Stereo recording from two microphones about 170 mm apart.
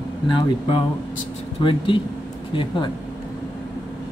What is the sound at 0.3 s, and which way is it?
Speech, 30° left (ahead or behind).